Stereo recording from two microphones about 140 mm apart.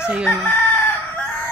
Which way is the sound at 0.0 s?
5° right (ahead or behind).